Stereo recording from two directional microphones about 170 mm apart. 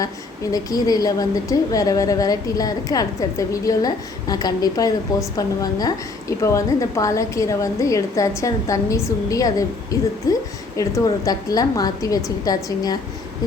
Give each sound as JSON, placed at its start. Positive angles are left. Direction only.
{"t": 0.5, "sound": "a woman's voice", "side_deg": 20}